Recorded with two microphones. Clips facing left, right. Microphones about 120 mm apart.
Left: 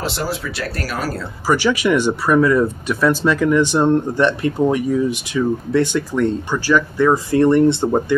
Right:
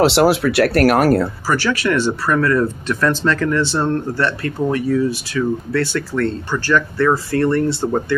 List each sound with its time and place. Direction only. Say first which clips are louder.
0.0 s speech: right 11 dB; 75° right (ahead or behind)
1.5 s speech: left 4 dB; 15° left (ahead or behind)